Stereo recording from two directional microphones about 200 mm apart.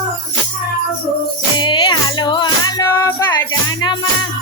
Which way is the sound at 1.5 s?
20° left (ahead or behind).